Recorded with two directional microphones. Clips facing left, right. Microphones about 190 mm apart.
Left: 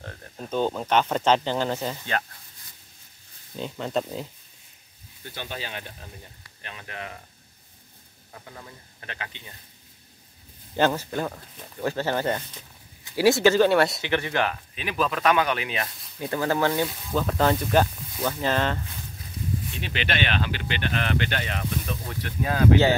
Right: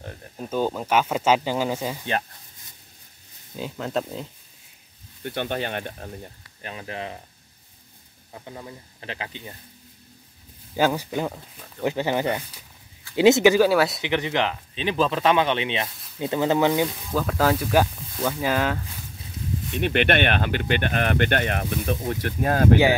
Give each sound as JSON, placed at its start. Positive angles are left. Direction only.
{"t": 0.4, "sound": "speech", "side_deg": -5}
{"t": 3.5, "sound": "speech", "side_deg": -5}
{"t": 5.2, "sound": "speech", "side_deg": -60}
{"t": 6.6, "sound": "speech", "side_deg": -30}
{"t": 8.3, "sound": "a man's voice", "side_deg": -20}
{"t": 10.8, "sound": "speech", "side_deg": -10}
{"t": 13.6, "sound": "speech", "side_deg": 0}
{"t": 14.0, "sound": "speech", "side_deg": -15}
{"t": 16.8, "sound": "speech", "side_deg": 0}
{"t": 19.8, "sound": "speech", "side_deg": -55}